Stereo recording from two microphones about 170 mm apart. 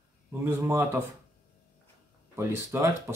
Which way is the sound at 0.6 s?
15° right (ahead or behind).